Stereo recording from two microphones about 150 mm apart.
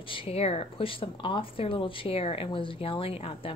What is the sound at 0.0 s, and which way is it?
Speech, 35° left (ahead or behind).